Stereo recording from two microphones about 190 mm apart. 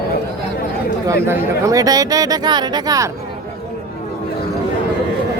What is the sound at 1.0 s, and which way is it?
Speech, 15° right (ahead or behind).